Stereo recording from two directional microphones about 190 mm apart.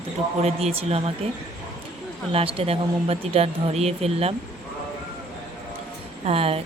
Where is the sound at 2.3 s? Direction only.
30° right (ahead or behind).